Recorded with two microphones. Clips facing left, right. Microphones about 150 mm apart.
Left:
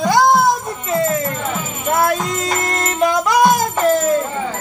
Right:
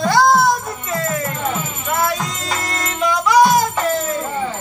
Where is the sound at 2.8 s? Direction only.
50° left (ahead or behind).